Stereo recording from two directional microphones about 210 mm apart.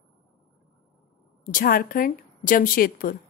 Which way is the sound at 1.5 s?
40° left (ahead or behind).